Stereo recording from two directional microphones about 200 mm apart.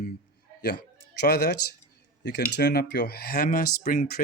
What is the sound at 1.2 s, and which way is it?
Speech, 55° left (ahead or behind).